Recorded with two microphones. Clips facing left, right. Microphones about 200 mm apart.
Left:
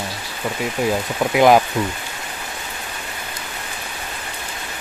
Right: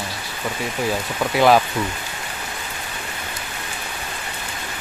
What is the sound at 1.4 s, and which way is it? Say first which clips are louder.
Speech: left 2 dB; 15° left (ahead or behind).